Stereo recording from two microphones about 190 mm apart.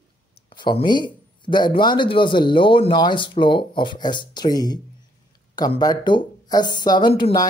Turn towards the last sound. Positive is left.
turn(degrees=20)  # may be behind; listen again after turning